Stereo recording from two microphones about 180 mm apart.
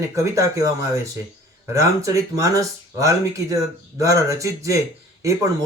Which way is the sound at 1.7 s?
15° right (ahead or behind).